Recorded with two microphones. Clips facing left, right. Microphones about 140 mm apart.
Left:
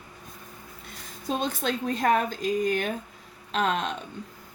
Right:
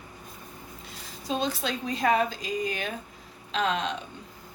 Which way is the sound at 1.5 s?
45° left (ahead or behind).